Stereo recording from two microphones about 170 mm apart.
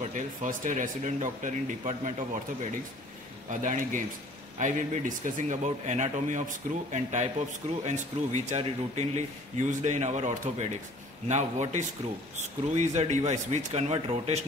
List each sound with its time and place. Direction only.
0.0 s a man's voice: 45° right (ahead or behind)